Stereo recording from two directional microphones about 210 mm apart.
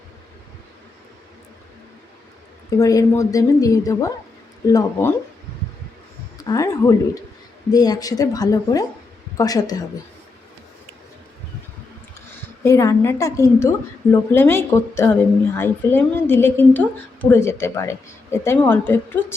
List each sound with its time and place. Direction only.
2.6 s a woman's voice: 15° left (ahead or behind)
6.3 s a woman's voice: 20° left (ahead or behind)
12.6 s a woman's voice: 15° left (ahead or behind)